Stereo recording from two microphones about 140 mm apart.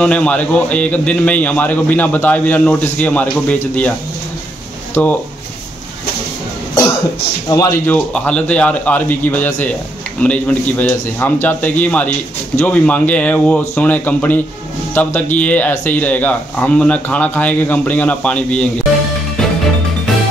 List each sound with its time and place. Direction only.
0.0 s a man's voice: 5° left (ahead or behind)
5.0 s a man's voice: 10° left (ahead or behind)
7.4 s a man's voice: 25° left (ahead or behind)
7.8 s a man's voice: 10° left (ahead or behind)